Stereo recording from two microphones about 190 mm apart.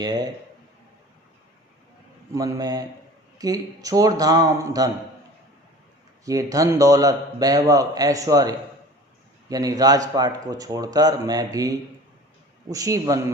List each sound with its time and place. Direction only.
0.0 s a man's voice: 20° right (ahead or behind)
2.3 s a man's voice: 15° right (ahead or behind)
6.2 s a man's voice: 20° right (ahead or behind)
12.7 s a man's voice: 15° right (ahead or behind)